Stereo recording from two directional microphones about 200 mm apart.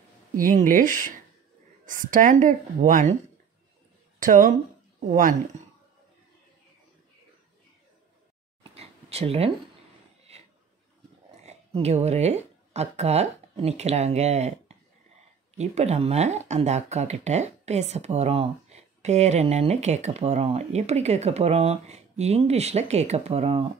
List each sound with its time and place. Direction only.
0.4 s speech: 45° right (ahead or behind)
4.2 s speech: 40° right (ahead or behind)
8.7 s a sound: 30° right (ahead or behind)
11.4 s speech: 35° right (ahead or behind)